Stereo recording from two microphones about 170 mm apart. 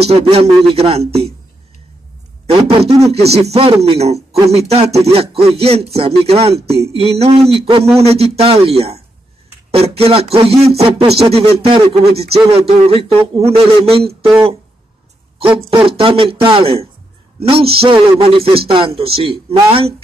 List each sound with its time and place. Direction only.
0.0 s a man's voice: 35° right (ahead or behind)
2.4 s a man's voice: 35° right (ahead or behind)
15.3 s a man's voice: 30° right (ahead or behind)